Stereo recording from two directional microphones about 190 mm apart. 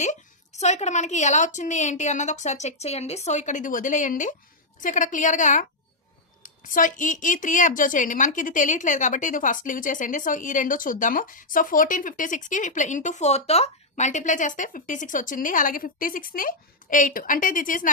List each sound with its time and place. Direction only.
0.6 s a woman's voice: 35° left (ahead or behind)